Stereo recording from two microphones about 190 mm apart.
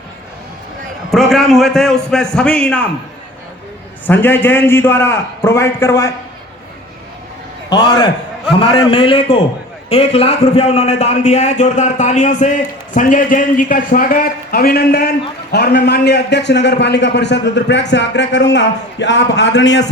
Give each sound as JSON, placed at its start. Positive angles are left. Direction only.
{"t": 1.1, "sound": "a man's voice", "side_deg": 0}
{"t": 4.0, "sound": "a man's voice", "side_deg": 10}
{"t": 7.7, "sound": "a man's voice", "side_deg": 20}